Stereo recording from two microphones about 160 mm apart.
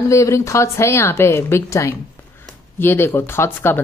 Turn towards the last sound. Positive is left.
turn(degrees=15)  # may be behind; listen again after turning